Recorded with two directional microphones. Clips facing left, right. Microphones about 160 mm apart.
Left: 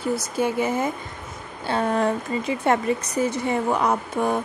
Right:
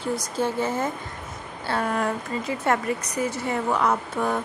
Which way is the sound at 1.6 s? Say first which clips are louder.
Left 3 dB; 25° left (ahead or behind).